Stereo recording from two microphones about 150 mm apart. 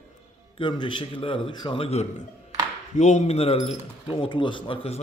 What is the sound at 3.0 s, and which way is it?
Speech, 50° left (ahead or behind).